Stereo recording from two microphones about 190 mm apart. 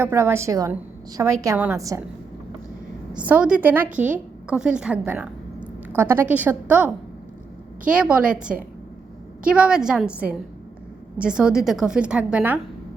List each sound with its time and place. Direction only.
0.0 s a woman's voice: 15° right (ahead or behind)
3.1 s a woman's voice: 5° right (ahead or behind)